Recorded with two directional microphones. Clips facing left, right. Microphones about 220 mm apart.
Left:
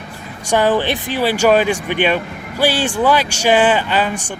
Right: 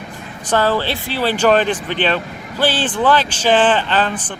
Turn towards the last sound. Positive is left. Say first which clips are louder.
# even
turn(degrees=10)  # may be behind; listen again after turning